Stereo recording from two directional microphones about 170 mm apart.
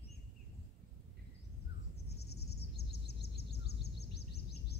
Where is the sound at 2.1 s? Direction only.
70° left (ahead or behind).